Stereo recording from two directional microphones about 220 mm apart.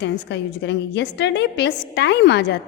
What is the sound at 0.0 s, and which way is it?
A woman's voice, 50° left (ahead or behind).